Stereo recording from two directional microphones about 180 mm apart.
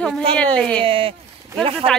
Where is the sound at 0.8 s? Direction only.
30° right (ahead or behind).